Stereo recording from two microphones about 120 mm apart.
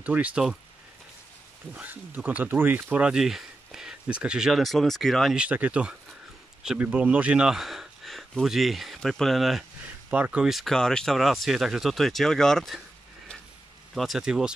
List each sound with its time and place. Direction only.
0.0 s speech: 10° right (ahead or behind)
1.7 s speech: 15° right (ahead or behind)
10.1 s speech: 10° right (ahead or behind)
13.9 s speech: centre (ahead or behind)